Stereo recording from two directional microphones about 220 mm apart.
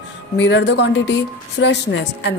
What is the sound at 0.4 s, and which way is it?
A woman's voice, 55° left (ahead or behind).